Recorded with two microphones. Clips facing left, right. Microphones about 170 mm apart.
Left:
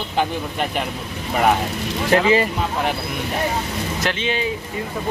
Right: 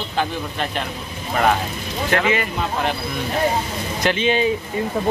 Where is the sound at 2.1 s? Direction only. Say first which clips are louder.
Left 4 dB; 30° left (ahead or behind).